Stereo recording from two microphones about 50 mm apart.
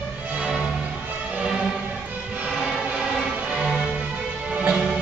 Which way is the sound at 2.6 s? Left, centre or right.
Centre.